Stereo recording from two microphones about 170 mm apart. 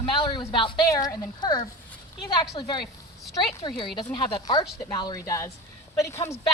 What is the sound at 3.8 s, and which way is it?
A woman's voice, 30° left (ahead or behind).